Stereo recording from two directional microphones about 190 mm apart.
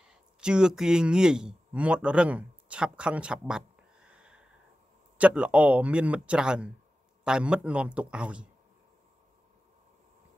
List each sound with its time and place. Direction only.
0.4 s speech: 5° right (ahead or behind)